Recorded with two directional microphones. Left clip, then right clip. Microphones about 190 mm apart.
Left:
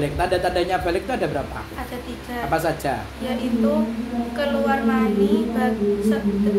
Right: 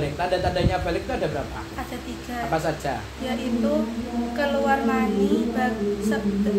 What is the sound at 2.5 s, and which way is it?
Speech, 50° left (ahead or behind).